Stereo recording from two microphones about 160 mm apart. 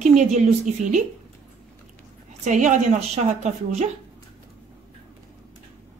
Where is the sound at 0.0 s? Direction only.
50° right (ahead or behind).